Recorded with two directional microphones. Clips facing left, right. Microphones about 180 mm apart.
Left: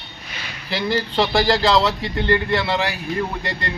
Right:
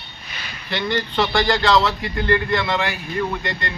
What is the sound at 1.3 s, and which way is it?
Speech, 35° left (ahead or behind).